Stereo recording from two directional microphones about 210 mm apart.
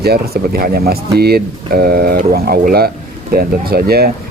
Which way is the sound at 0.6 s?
45° right (ahead or behind).